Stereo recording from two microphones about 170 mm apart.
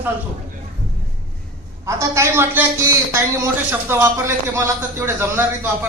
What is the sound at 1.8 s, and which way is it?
A man's voice, 15° right (ahead or behind).